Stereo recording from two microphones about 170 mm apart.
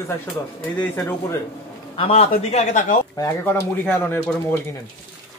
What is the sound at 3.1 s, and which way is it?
Speech, 10° left (ahead or behind).